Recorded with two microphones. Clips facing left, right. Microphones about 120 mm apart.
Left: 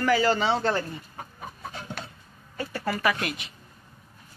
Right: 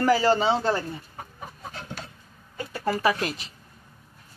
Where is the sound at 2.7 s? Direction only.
25° right (ahead or behind).